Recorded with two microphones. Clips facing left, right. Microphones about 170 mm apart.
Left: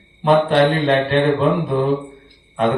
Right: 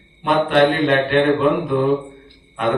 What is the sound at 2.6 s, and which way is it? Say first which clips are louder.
Speech: left 2 dB; 30° left (ahead or behind).